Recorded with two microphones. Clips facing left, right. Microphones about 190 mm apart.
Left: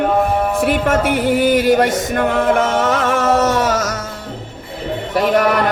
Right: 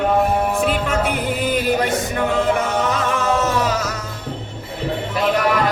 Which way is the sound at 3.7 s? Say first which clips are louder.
Left 4 dB; 45° left (ahead or behind).